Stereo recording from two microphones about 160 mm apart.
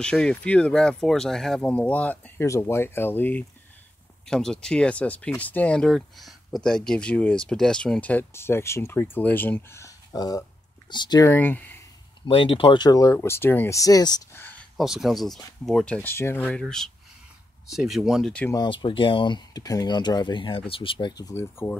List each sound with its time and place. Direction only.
0.0 s speech: 5° left (ahead or behind)
12.3 s speech: 35° left (ahead or behind)
14.3 s a sound: 15° left (ahead or behind)
14.8 s speech: centre (ahead or behind)
18.5 s speech: 30° left (ahead or behind)